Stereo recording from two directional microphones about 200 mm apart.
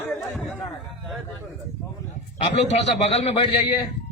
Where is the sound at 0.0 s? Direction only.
10° left (ahead or behind).